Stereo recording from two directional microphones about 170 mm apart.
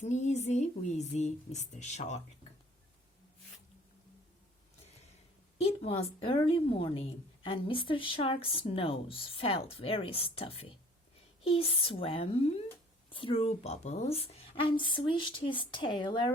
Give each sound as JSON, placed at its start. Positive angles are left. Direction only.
{"t": 0.0, "sound": "speech", "side_deg": 45}
{"t": 5.5, "sound": "speech", "side_deg": 35}